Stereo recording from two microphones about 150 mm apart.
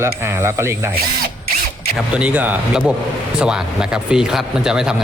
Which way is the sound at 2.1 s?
10° right (ahead or behind).